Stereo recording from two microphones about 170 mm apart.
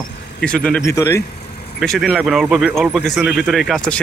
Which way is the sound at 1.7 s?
Centre (ahead or behind).